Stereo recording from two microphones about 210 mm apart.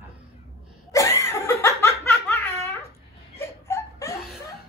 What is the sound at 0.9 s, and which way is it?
Laughter, 15° left (ahead or behind).